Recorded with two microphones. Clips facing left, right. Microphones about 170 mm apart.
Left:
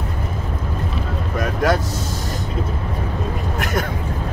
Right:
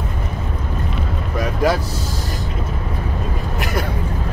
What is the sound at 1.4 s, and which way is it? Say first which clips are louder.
Vehicle: right 1 dB; centre (ahead or behind).